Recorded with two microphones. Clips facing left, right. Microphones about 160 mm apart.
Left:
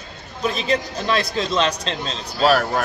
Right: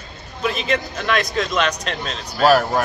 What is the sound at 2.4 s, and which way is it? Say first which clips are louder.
Speech: right 2 dB; 5° right (ahead or behind).